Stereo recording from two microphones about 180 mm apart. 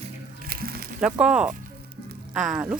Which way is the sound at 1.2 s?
5° right (ahead or behind).